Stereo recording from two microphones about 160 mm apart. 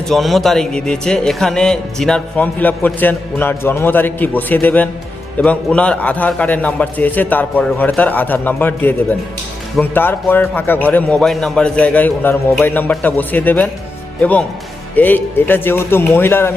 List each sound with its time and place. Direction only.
0.1 s speech: centre (ahead or behind)